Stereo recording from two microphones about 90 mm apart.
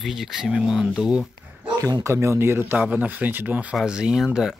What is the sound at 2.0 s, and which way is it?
Speech, 30° right (ahead or behind).